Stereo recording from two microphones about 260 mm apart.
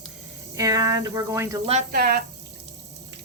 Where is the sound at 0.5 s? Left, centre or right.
Centre.